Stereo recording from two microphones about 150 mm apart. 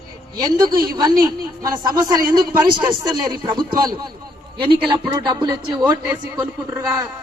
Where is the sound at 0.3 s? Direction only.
25° right (ahead or behind).